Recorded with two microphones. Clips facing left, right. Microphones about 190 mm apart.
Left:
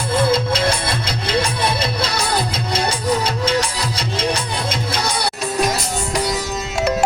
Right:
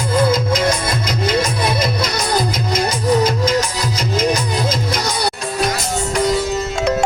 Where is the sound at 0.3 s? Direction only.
30° left (ahead or behind).